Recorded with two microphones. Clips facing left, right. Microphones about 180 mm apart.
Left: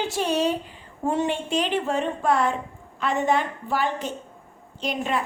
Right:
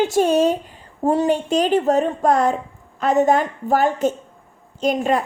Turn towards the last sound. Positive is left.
turn(degrees=-45)  # may be behind; listen again after turning